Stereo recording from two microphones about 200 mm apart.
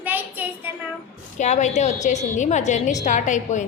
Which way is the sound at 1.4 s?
35° left (ahead or behind).